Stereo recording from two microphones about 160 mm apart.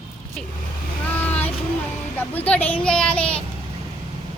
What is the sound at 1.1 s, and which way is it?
Vehicle, 10° left (ahead or behind).